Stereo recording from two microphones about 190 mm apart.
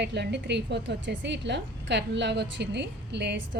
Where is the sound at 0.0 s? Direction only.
65° right (ahead or behind).